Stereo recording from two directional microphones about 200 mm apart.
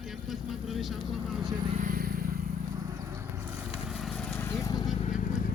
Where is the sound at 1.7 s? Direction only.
45° right (ahead or behind).